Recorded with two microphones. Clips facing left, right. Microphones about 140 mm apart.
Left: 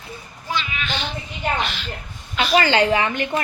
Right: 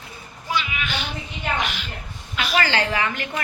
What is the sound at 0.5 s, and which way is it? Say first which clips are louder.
Speech: even; 10° right (ahead or behind).